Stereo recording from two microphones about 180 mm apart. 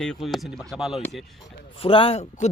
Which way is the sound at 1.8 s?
30° left (ahead or behind).